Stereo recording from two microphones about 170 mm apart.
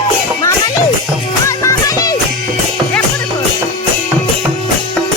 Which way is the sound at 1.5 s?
20° left (ahead or behind).